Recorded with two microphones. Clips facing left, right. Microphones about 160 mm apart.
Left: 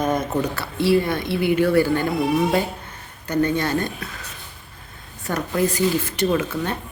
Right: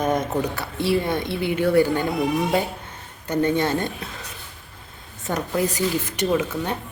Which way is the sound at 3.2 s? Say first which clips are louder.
Even; 20° right (ahead or behind).